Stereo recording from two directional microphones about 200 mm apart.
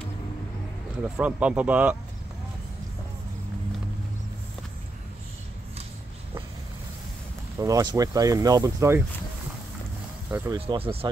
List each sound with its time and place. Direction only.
0.9 s speech: 5° right (ahead or behind)
7.5 s speech: 15° right (ahead or behind)
10.3 s speech: 10° right (ahead or behind)
10.7 s speech: 30° right (ahead or behind)